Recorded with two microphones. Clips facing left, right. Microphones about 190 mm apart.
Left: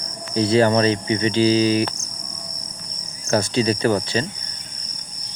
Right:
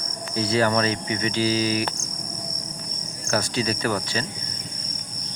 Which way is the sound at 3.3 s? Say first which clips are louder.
Left 6 dB; 25° left (ahead or behind).